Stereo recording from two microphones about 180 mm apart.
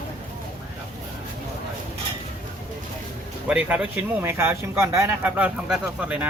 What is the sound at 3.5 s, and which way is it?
Speech, 5° right (ahead or behind).